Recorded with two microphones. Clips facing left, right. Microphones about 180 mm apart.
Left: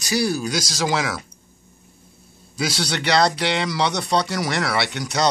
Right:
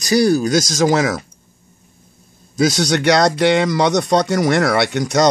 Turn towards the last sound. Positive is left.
turn(degrees=-50)  # may be behind; listen again after turning